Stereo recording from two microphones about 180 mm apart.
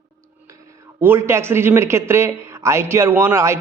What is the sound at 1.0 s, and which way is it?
Speech, 15° right (ahead or behind).